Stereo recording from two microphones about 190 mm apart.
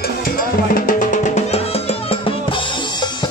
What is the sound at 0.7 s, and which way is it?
Music, 45° left (ahead or behind).